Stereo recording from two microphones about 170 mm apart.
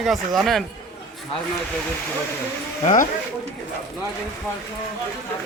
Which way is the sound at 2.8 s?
50° left (ahead or behind).